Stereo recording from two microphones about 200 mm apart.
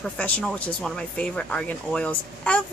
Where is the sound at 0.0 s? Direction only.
5° left (ahead or behind).